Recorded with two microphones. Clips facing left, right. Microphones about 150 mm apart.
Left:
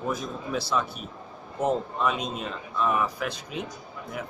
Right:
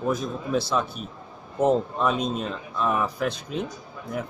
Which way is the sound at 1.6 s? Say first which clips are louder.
Right 4 dB; 5° left (ahead or behind).